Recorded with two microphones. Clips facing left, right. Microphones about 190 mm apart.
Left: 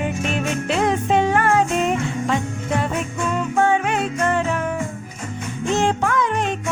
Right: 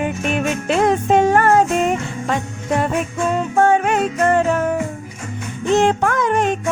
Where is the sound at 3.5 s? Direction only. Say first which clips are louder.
Right 4 dB; 45° right (ahead or behind).